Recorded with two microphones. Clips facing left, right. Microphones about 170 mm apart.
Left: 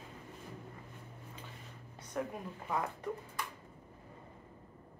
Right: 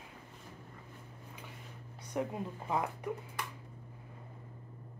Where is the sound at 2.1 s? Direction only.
20° right (ahead or behind).